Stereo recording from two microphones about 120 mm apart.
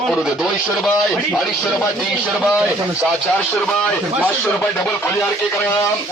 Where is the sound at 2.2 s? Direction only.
10° right (ahead or behind).